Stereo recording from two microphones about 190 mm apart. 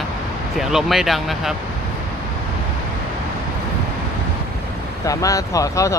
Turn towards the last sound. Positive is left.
turn(degrees=15)  # may be behind; listen again after turning